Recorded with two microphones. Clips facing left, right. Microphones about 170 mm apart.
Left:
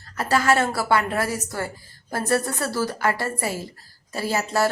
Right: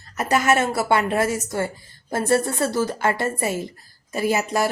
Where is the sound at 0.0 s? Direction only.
20° right (ahead or behind).